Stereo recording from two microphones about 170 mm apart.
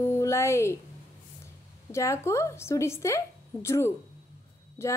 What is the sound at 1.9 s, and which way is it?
Speech, 15° left (ahead or behind).